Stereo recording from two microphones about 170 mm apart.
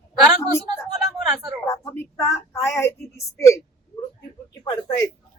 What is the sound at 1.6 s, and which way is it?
Speech, 20° left (ahead or behind).